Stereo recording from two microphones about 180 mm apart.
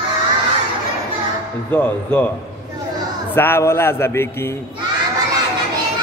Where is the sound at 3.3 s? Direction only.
10° left (ahead or behind).